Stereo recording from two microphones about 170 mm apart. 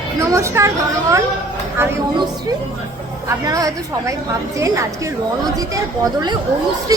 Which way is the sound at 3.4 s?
20° right (ahead or behind).